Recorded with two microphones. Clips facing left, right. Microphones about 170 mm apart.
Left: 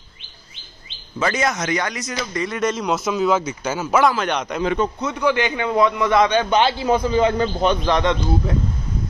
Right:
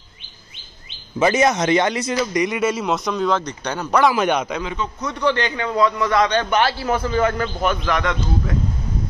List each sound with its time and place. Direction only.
1.2 s speech: 25° right (ahead or behind)
2.3 s speech: 15° right (ahead or behind); by 4.1 s 5° left (ahead or behind)
4.1 s a man's voice: 10° right (ahead or behind)
5.0 s a man's voice: 15° left (ahead or behind)